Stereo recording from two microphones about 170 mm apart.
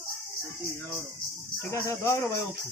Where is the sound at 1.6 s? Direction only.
15° left (ahead or behind).